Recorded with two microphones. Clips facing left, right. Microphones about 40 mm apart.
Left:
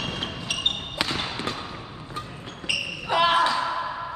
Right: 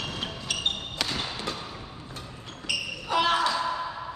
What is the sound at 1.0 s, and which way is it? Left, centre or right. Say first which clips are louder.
Basketball bounce: left 3 dB; left.